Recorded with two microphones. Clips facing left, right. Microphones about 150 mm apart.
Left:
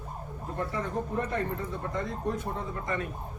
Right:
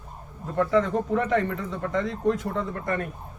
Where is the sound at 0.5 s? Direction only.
90° right; by 3.1 s 55° right (ahead or behind).